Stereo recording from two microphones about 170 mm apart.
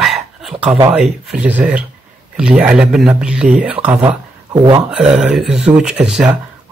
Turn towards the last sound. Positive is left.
turn(degrees=-5)  # may be behind; listen again after turning